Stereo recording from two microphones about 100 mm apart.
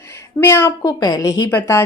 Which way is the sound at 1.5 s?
25° left (ahead or behind).